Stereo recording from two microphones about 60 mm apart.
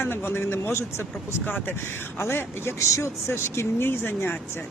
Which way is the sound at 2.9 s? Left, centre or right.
Left.